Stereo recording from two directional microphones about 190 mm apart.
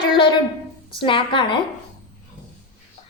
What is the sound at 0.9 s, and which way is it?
Speech, 25° left (ahead or behind).